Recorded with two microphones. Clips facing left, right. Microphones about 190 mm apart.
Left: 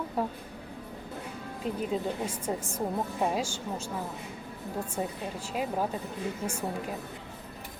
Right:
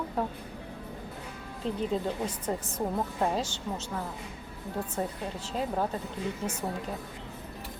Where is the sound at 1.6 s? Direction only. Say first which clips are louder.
Right 1 dB; 10° left (ahead or behind).